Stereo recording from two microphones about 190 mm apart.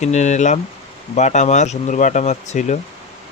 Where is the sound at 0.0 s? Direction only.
35° left (ahead or behind).